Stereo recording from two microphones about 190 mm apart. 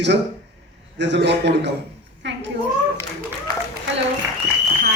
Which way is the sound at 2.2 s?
65° right (ahead or behind).